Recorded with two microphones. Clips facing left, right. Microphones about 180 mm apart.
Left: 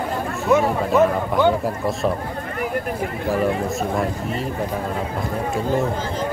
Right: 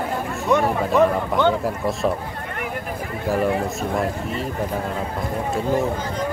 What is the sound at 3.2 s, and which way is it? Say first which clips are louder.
Speech: right 1 dB; centre (ahead or behind).